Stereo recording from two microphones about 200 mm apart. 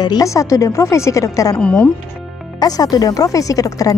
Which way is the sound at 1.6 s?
5° left (ahead or behind).